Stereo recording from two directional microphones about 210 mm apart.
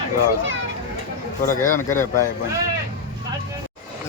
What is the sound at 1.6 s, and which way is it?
Speech, 10° left (ahead or behind).